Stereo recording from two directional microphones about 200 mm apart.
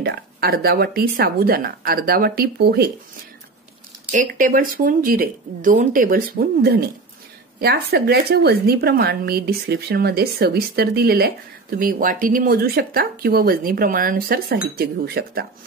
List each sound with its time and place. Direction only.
0.0 s speech: 55° right (ahead or behind)
4.1 s speech: 40° right (ahead or behind)